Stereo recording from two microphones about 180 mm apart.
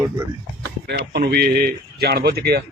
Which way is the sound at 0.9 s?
60° right (ahead or behind).